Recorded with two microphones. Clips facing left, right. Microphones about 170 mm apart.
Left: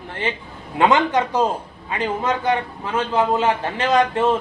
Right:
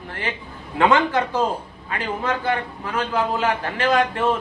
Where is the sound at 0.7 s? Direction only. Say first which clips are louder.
Left 1 dB; 20° left (ahead or behind).